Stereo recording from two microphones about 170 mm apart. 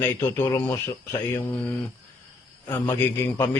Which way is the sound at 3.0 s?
15° left (ahead or behind).